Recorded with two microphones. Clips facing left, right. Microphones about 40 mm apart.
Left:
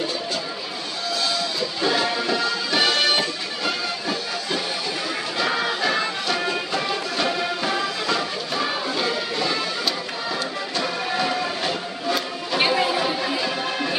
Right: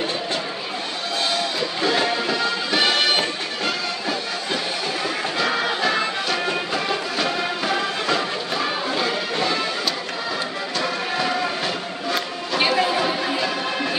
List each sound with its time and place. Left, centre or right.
1.1 s a sound: right
2.1 s music: centre
2.9 s music: right
5.4 s music: centre
10.8 s music: centre